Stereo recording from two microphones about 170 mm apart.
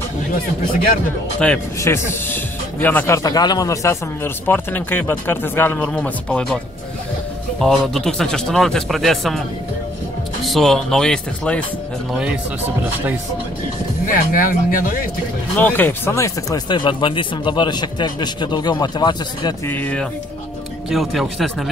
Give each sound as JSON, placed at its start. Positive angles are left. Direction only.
{"t": 1.4, "sound": "speech", "side_deg": 5}
{"t": 7.6, "sound": "speech", "side_deg": 0}
{"t": 10.4, "sound": "speech", "side_deg": 0}
{"t": 14.0, "sound": "speech", "side_deg": 55}
{"t": 15.5, "sound": "speech", "side_deg": 10}
{"t": 19.7, "sound": "speech", "side_deg": 10}